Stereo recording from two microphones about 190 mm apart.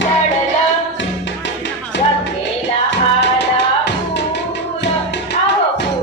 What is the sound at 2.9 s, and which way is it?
Music, 65° left (ahead or behind).